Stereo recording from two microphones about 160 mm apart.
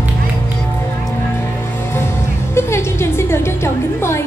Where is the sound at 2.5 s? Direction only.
15° left (ahead or behind).